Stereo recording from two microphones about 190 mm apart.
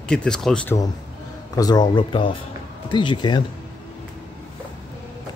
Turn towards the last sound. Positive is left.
turn(degrees=25)  # may be behind; listen again after turning